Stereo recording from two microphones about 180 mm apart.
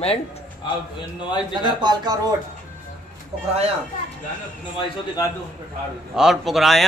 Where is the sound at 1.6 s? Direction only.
25° right (ahead or behind).